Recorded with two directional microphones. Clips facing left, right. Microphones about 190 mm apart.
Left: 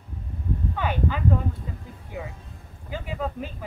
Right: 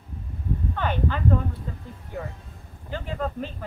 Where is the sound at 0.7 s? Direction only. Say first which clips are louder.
Even; 10° left (ahead or behind).